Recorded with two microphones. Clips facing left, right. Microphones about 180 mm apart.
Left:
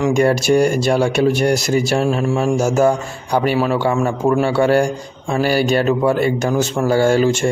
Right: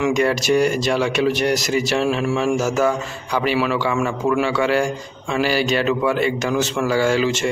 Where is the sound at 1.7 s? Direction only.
45° left (ahead or behind).